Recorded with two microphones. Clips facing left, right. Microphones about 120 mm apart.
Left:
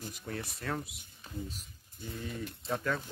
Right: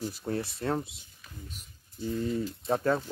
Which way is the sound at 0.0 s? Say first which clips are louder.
Right 8 dB; 35° right (ahead or behind).